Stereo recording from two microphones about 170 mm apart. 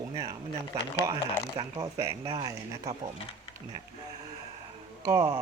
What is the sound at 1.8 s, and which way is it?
Speech, 20° right (ahead or behind).